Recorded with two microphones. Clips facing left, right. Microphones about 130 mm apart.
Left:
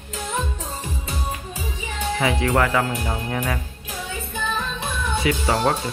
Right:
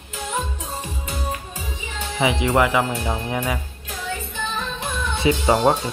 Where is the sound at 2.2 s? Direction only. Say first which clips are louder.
Right 2 dB; 15° right (ahead or behind).